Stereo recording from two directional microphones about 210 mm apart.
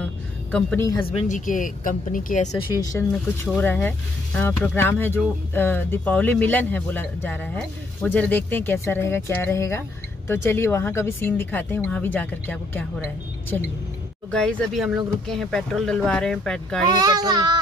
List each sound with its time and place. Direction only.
0.5 s speech: 5° left (ahead or behind)
1.1 s speech: 35° left (ahead or behind)
2.5 s speech: 15° left (ahead or behind)
3.1 s speech: 5° left (ahead or behind)
16.8 s speech: 20° right (ahead or behind)